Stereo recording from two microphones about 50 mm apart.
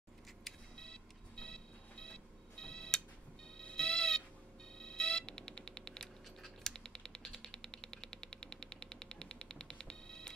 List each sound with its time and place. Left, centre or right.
0.7 s vehicle: centre
3.5 s a sound: centre
4.7 s music: centre
6.7 s mechanisms: centre